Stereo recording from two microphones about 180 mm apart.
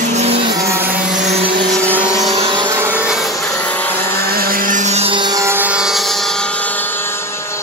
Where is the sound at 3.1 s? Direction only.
Centre (ahead or behind).